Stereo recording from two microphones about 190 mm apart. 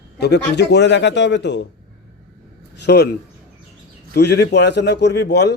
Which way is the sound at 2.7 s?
65° left (ahead or behind).